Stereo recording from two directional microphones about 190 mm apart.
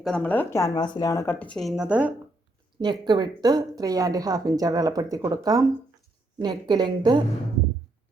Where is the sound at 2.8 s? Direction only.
25° right (ahead or behind).